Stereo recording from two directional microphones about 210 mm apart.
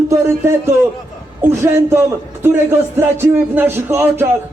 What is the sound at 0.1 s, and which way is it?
A man's voice, 15° right (ahead or behind).